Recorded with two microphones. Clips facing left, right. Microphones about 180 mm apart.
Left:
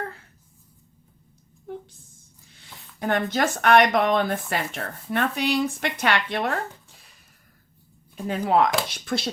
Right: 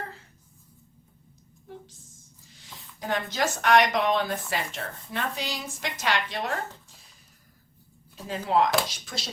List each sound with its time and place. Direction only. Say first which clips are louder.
3.0 s a woman's voice: left 5 dB; 60° left (ahead or behind)
8.1 s a woman's voice: left 4 dB; 60° left (ahead or behind)